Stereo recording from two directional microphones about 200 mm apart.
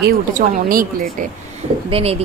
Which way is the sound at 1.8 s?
30° right (ahead or behind).